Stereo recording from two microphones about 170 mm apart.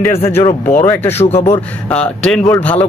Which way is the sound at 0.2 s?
35° left (ahead or behind).